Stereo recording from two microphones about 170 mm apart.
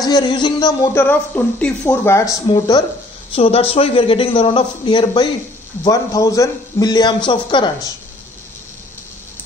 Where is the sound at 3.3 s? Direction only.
35° left (ahead or behind).